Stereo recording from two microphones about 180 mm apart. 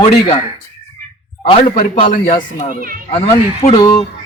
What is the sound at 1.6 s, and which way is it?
A man's voice, 50° left (ahead or behind).